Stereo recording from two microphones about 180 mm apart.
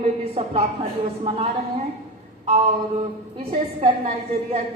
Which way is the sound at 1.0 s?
35° right (ahead or behind).